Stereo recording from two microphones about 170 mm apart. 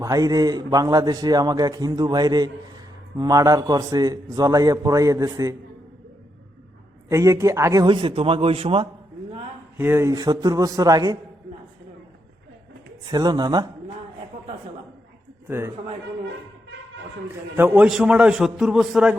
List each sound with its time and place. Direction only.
0.0 s a man's voice: 20° right (ahead or behind)
7.1 s speech: 20° right (ahead or behind)
7.9 s a man's voice: 30° right (ahead or behind)
9.7 s a man's voice: 15° right (ahead or behind)
13.1 s a man's voice: 25° right (ahead or behind)
15.4 s a man's voice: 15° right (ahead or behind)
17.6 s a man's voice: 10° right (ahead or behind)